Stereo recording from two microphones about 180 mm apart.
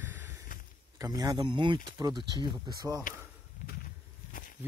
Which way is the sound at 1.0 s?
20° right (ahead or behind).